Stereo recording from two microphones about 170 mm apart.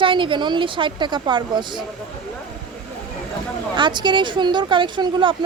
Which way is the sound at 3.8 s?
25° right (ahead or behind).